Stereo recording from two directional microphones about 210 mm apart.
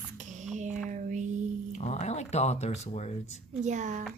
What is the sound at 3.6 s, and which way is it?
Speech, 35° right (ahead or behind).